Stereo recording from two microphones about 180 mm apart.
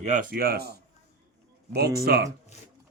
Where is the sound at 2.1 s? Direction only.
55° right (ahead or behind).